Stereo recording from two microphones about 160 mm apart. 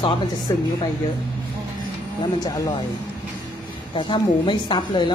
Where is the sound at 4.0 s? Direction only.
30° left (ahead or behind).